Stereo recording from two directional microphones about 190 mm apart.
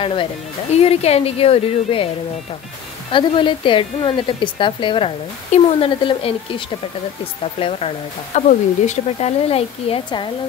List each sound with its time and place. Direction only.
0.0 s a woman's voice: 25° left (ahead or behind)
3.1 s a woman's voice: 25° left (ahead or behind)